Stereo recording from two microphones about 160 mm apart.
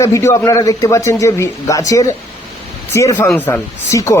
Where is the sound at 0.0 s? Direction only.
20° left (ahead or behind).